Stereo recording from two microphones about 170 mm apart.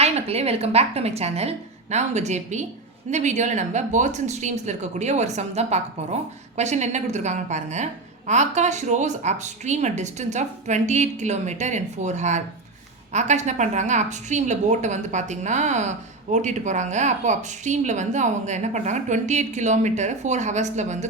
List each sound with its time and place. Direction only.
0.0 s a woman's voice: 35° right (ahead or behind)